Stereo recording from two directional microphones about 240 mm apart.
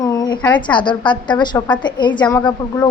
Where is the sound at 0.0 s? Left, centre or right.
Centre.